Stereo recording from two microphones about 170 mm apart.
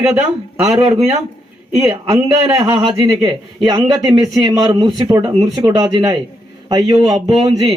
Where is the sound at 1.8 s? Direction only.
20° right (ahead or behind).